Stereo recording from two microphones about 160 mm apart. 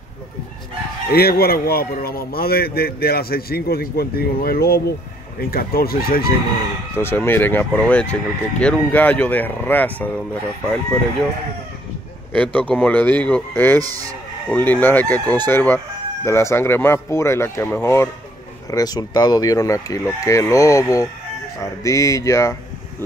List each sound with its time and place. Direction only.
1.1 s a man's voice: 75° left (ahead or behind)
7.0 s speech: 15° left (ahead or behind)
12.3 s speech: 5° left (ahead or behind)